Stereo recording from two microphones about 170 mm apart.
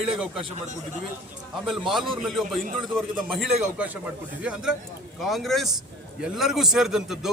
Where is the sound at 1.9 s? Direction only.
Centre (ahead or behind).